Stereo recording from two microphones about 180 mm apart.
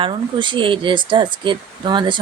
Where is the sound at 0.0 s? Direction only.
25° right (ahead or behind).